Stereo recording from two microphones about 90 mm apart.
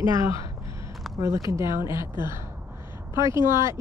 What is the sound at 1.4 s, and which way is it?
Speech, 35° right (ahead or behind).